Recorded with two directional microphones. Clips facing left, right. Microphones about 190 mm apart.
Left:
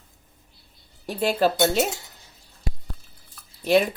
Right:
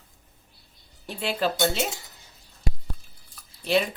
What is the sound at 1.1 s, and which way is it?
Speech, 40° left (ahead or behind).